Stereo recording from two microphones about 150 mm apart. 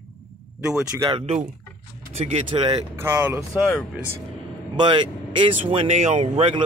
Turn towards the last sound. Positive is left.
turn(degrees=-50)  # may be behind; listen again after turning